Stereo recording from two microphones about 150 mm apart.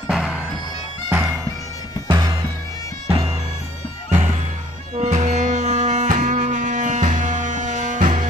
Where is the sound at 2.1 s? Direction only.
25° right (ahead or behind).